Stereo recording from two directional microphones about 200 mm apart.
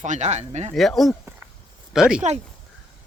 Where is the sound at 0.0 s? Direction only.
35° right (ahead or behind).